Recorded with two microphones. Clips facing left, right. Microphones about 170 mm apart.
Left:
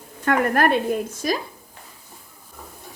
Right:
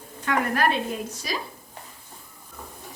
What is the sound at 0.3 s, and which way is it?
Speech, 55° left (ahead or behind).